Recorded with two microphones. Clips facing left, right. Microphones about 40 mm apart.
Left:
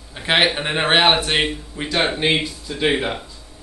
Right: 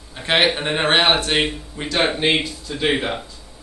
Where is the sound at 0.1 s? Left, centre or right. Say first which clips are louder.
Even; centre.